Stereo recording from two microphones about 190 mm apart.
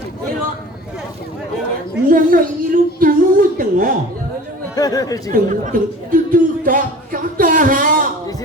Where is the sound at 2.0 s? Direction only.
45° right (ahead or behind).